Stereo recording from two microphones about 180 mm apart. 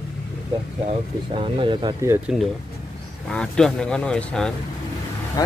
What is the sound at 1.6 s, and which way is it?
Speech, 25° right (ahead or behind).